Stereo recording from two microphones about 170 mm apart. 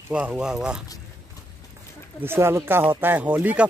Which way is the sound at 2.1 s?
15° right (ahead or behind).